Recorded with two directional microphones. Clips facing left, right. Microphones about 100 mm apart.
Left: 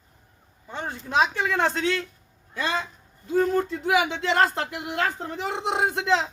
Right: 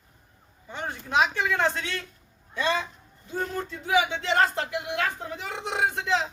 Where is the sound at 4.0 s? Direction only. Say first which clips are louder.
Right 1 dB; 45° left (ahead or behind).